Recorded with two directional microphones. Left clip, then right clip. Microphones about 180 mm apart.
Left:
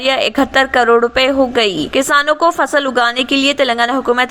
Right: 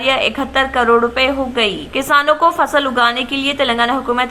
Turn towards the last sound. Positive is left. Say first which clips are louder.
# left 2 dB
turn(degrees=30)  # may be behind; listen again after turning